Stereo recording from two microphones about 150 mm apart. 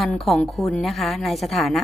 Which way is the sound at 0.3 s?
5° left (ahead or behind).